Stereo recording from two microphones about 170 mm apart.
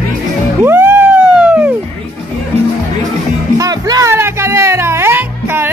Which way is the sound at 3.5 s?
20° right (ahead or behind).